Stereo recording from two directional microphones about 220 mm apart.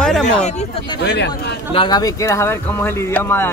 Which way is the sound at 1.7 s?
20° left (ahead or behind).